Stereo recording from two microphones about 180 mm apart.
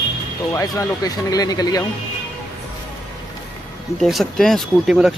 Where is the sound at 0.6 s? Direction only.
20° left (ahead or behind).